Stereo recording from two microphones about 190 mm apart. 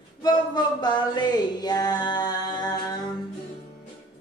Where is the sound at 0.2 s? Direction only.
20° left (ahead or behind).